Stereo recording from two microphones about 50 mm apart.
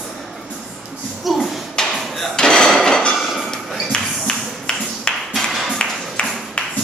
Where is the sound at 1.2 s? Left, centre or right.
Centre.